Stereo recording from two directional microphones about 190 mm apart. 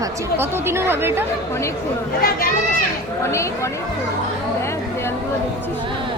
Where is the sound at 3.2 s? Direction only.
15° left (ahead or behind).